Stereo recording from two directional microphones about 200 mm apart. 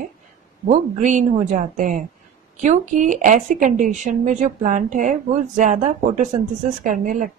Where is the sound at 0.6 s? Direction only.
35° right (ahead or behind).